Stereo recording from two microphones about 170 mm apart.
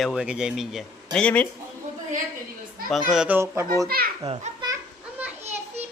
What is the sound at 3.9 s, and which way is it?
Speech, 65° right (ahead or behind).